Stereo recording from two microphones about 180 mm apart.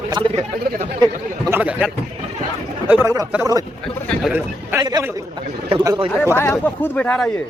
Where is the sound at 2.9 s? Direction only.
15° right (ahead or behind).